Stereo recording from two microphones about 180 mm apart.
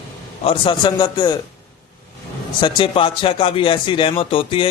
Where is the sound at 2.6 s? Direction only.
25° left (ahead or behind).